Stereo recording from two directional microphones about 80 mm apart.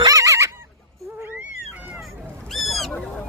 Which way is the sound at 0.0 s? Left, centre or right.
Right.